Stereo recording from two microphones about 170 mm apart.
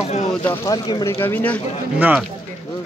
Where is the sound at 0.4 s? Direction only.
20° left (ahead or behind).